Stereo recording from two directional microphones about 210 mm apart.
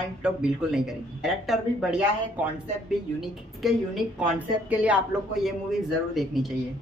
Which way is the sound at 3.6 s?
Centre (ahead or behind).